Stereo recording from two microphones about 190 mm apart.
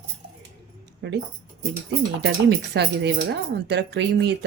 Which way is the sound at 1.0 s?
70° right (ahead or behind).